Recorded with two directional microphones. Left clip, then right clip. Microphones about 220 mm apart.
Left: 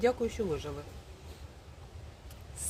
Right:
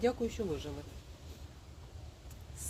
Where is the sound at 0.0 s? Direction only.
10° left (ahead or behind).